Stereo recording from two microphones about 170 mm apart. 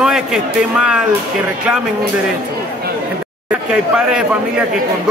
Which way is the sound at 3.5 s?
5° right (ahead or behind).